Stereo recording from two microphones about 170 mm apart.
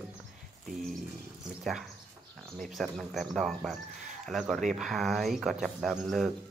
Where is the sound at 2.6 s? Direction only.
Centre (ahead or behind).